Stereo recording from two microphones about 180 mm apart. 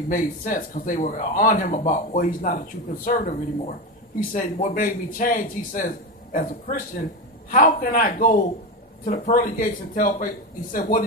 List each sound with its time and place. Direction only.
0.1 s a man's voice: 50° left (ahead or behind)